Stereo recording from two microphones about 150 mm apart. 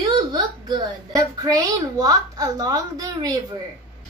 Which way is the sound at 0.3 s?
30° right (ahead or behind).